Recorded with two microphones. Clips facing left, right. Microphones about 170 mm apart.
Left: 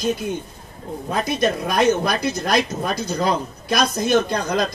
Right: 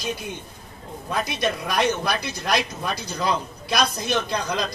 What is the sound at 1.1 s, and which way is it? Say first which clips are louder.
Speech: left 4 dB; 50° left (ahead or behind).